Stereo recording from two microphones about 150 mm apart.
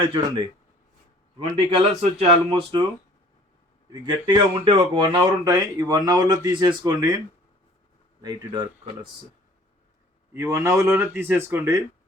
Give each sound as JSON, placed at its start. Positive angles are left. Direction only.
{"t": 0.0, "sound": "speech", "side_deg": -30}
{"t": 1.4, "sound": "speech", "side_deg": -45}
{"t": 4.0, "sound": "speech", "side_deg": -30}
{"t": 8.2, "sound": "speech", "side_deg": -30}
{"t": 10.4, "sound": "speech", "side_deg": -20}